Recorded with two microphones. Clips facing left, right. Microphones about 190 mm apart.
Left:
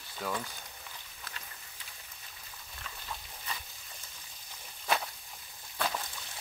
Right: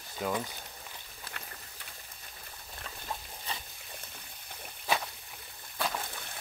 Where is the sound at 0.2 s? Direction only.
15° right (ahead or behind).